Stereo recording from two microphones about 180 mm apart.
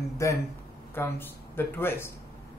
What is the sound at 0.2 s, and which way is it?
Speech, 15° left (ahead or behind).